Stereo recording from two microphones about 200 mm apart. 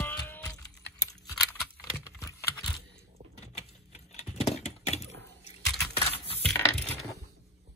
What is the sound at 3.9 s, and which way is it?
Patter, 35° left (ahead or behind).